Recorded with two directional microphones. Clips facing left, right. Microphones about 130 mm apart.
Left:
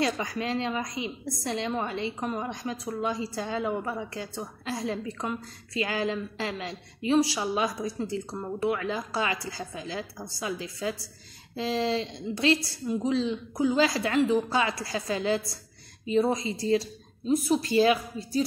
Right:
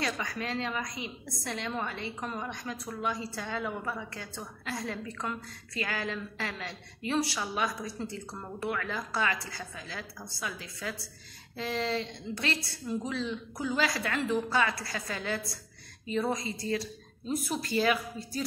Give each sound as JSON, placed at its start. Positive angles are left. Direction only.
{"t": 0.0, "sound": "a woman's voice", "side_deg": 30}